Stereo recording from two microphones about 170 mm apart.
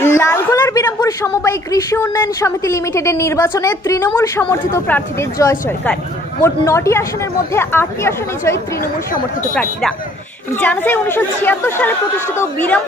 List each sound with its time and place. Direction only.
0.0 s a woman's voice: 15° left (ahead or behind)
9.6 s a woman's voice: 5° left (ahead or behind)